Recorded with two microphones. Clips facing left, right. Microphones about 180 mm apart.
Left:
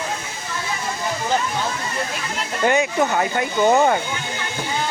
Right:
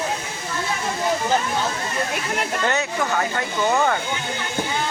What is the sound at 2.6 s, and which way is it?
Speech, 15° left (ahead or behind).